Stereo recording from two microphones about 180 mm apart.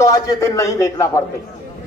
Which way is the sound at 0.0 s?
20° left (ahead or behind).